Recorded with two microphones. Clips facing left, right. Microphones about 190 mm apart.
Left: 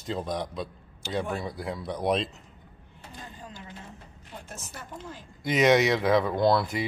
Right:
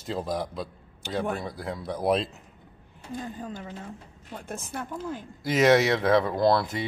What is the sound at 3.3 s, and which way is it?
Speech, 50° right (ahead or behind).